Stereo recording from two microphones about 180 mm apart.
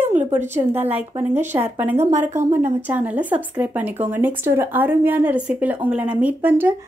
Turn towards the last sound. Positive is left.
turn(degrees=-10)  # may be behind; listen again after turning